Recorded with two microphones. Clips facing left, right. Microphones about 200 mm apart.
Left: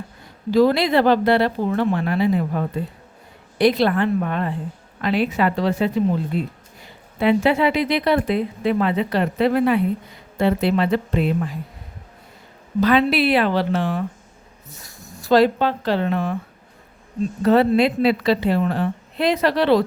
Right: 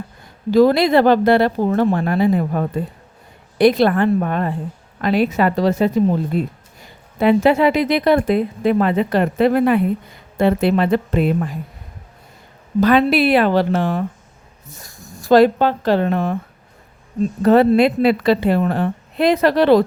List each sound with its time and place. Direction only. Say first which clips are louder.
0.5 s speech: right 3 dB; 45° right (ahead or behind)
12.8 s speech: right 3 dB; 45° right (ahead or behind)
17.4 s speech: right 3 dB; 50° right (ahead or behind)